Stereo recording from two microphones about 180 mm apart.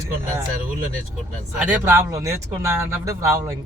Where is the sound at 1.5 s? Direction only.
5° right (ahead or behind).